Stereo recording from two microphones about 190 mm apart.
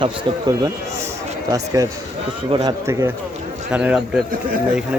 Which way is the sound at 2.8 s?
15° right (ahead or behind).